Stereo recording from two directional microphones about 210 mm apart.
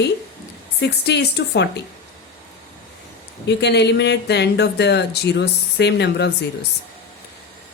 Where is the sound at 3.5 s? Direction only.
55° left (ahead or behind).